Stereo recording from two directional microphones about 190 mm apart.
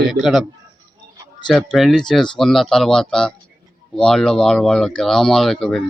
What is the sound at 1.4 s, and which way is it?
Speech, centre (ahead or behind).